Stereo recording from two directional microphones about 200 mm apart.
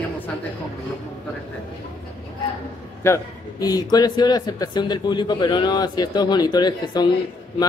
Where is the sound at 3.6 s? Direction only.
20° left (ahead or behind).